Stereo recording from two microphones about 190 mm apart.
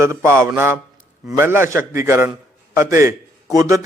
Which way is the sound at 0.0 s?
15° right (ahead or behind).